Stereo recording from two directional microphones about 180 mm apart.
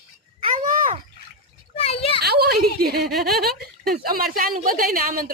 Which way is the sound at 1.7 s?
35° left (ahead or behind).